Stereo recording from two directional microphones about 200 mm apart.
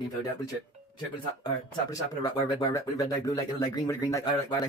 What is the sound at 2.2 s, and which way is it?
Speech, 20° left (ahead or behind).